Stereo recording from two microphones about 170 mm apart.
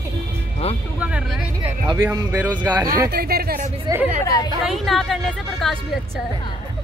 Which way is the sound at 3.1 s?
65° right (ahead or behind).